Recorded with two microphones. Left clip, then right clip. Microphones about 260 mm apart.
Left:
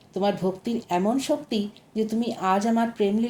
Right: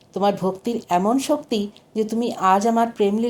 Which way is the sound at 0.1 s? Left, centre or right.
Right.